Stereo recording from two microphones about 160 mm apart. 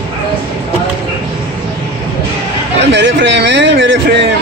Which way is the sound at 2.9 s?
90° right.